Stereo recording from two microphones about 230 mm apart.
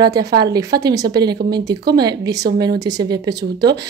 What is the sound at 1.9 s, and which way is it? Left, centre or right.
A woman's voice, centre.